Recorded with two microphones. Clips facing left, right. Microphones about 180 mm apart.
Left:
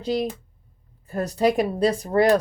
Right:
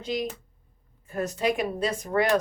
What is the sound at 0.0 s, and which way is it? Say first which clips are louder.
Speech: left 5 dB; 35° left (ahead or behind).